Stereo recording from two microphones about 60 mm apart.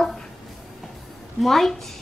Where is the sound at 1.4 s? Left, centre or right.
Centre.